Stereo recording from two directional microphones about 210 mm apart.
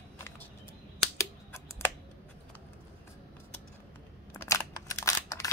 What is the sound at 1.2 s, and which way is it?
Typing, 10° left (ahead or behind).